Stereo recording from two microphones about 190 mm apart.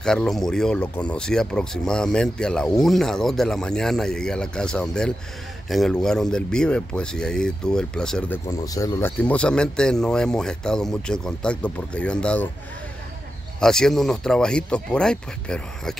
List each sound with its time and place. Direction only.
0.0 s speech: 5° left (ahead or behind)
8.5 s speech: 20° left (ahead or behind)
9.2 s speech: 5° left (ahead or behind)
13.6 s speech: 5° left (ahead or behind)